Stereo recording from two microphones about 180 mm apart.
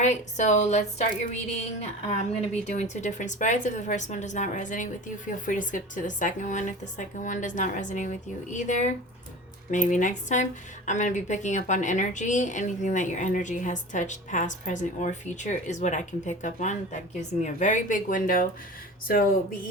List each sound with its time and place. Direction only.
0.0 s a woman's voice: 40° left (ahead or behind)